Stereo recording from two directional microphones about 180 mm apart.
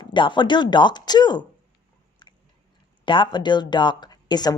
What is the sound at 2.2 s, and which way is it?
Biting, 25° left (ahead or behind).